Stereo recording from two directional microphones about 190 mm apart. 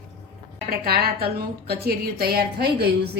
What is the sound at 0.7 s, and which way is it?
A woman's voice, 55° right (ahead or behind).